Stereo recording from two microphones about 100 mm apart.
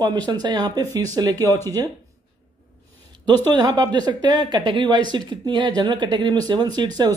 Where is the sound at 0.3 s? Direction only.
45° right (ahead or behind).